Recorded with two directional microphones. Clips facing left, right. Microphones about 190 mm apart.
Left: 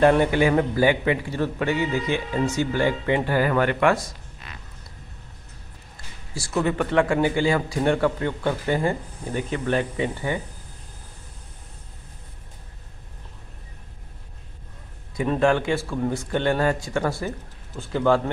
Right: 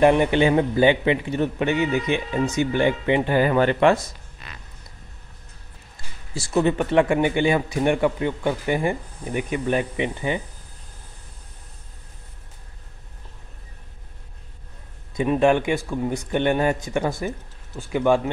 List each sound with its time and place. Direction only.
0.0 s a man's voice: 15° right (ahead or behind)
6.3 s a man's voice: 20° right (ahead or behind)
15.1 s a man's voice: 15° right (ahead or behind)